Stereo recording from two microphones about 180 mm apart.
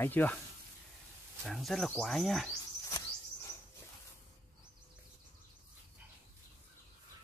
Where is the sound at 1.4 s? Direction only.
Centre (ahead or behind).